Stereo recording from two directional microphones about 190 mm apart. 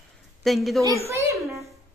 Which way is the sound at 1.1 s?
15° right (ahead or behind).